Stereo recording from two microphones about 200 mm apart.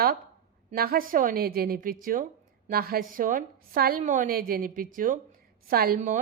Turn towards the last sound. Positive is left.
turn(degrees=-45)  # may be behind; listen again after turning